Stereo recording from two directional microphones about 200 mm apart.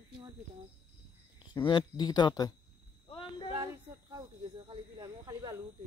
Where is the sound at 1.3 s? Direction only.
25° left (ahead or behind).